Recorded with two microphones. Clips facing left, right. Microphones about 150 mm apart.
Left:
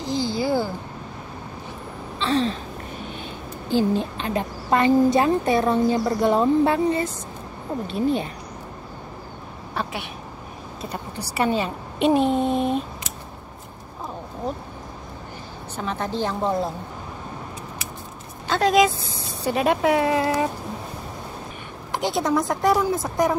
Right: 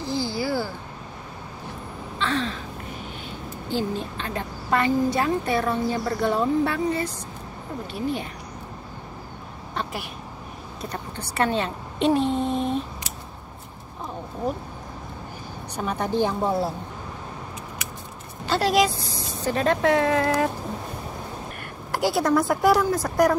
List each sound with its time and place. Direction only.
0.0 s a sound: 20° left (ahead or behind)
2.1 s a sound: 25° left (ahead or behind)
3.7 s a woman's voice: 20° left (ahead or behind)
11.3 s a woman's voice: 5° left (ahead or behind)
15.7 s a woman's voice: 10° right (ahead or behind)
18.5 s speech: centre (ahead or behind)
21.9 s a woman's voice: 5° right (ahead or behind)